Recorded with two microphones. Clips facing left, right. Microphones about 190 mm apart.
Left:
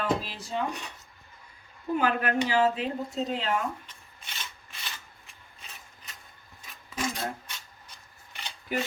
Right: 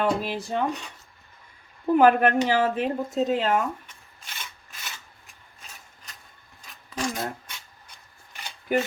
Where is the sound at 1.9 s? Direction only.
55° right (ahead or behind).